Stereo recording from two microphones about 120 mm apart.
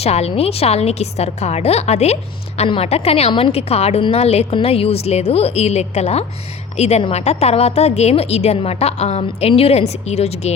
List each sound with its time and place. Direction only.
0.0 s a woman's voice: 60° left (ahead or behind)